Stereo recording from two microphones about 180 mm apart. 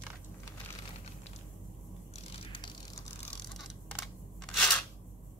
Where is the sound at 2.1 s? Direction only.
30° left (ahead or behind).